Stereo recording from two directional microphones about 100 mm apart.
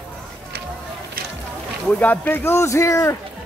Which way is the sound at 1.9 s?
15° left (ahead or behind).